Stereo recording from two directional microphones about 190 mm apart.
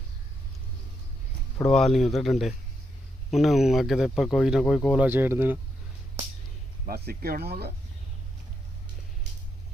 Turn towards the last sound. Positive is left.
turn(degrees=-55)  # may be behind; listen again after turning